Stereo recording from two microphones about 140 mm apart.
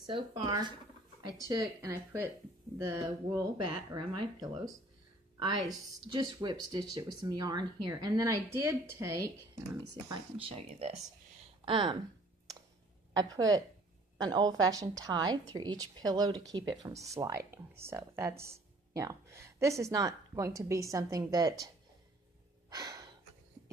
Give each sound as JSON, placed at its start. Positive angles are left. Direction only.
{"t": 0.0, "sound": "speech", "side_deg": -35}
{"t": 1.2, "sound": "speech", "side_deg": -25}
{"t": 3.6, "sound": "speech", "side_deg": -35}
{"t": 6.0, "sound": "speech", "side_deg": -35}
{"t": 10.3, "sound": "speech", "side_deg": -45}
{"t": 13.1, "sound": "speech", "side_deg": -25}
{"t": 22.7, "sound": "gasp", "side_deg": -25}